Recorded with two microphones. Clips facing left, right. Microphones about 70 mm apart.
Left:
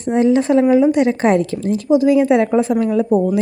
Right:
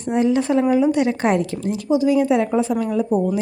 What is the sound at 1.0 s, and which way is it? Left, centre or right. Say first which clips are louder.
Speech: left 4 dB; left.